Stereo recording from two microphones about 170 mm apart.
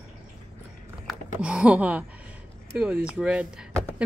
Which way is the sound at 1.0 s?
5° right (ahead or behind).